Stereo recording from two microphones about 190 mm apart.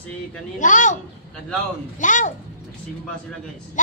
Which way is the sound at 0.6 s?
40° left (ahead or behind).